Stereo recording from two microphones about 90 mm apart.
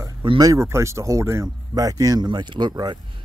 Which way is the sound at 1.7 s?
40° right (ahead or behind).